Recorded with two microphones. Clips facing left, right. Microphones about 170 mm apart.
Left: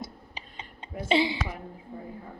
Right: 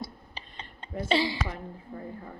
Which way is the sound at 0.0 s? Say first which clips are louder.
Even; 15° left (ahead or behind).